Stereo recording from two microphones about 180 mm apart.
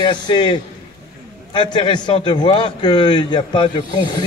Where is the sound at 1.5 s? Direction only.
25° left (ahead or behind).